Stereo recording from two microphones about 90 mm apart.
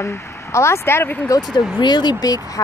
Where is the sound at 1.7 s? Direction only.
55° left (ahead or behind).